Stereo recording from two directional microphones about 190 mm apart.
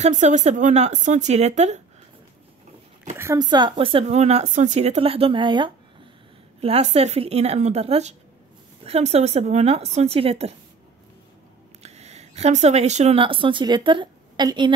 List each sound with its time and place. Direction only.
0.0 s speech: 40° right (ahead or behind)
3.2 s speech: 15° right (ahead or behind)
11.8 s speech: 35° right (ahead or behind)